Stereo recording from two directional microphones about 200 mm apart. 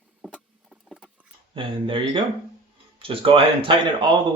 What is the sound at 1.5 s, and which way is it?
Speech, 25° right (ahead or behind).